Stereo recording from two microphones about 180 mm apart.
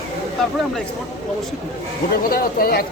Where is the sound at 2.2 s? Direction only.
55° left (ahead or behind).